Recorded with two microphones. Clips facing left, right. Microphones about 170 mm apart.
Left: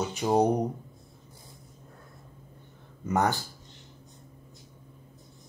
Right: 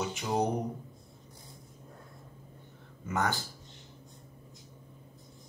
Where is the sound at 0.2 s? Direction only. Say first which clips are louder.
Left 8 dB; 40° left (ahead or behind).